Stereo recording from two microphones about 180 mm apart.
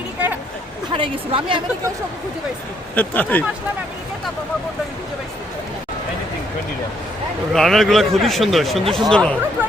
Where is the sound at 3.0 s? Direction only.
10° left (ahead or behind).